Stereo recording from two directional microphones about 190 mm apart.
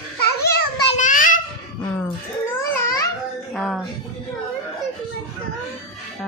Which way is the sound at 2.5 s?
15° left (ahead or behind).